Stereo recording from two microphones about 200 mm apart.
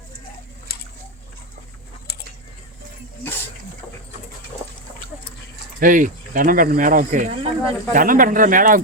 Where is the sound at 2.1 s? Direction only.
55° left (ahead or behind).